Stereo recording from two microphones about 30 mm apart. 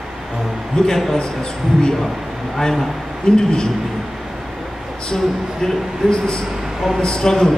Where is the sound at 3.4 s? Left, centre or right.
Left.